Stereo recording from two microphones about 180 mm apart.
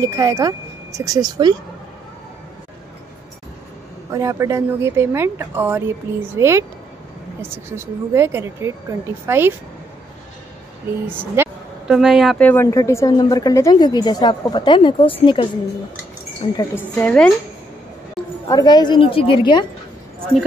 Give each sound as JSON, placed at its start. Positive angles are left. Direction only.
{"t": 0.0, "sound": "speech", "side_deg": -15}
{"t": 4.1, "sound": "speech", "side_deg": -15}
{"t": 11.1, "sound": "speech", "side_deg": -10}
{"t": 12.4, "sound": "a woman's voice", "side_deg": 15}
{"t": 16.5, "sound": "a woman's voice", "side_deg": 10}
{"t": 18.2, "sound": "a sound", "side_deg": 5}
{"t": 18.5, "sound": "a woman's voice", "side_deg": 20}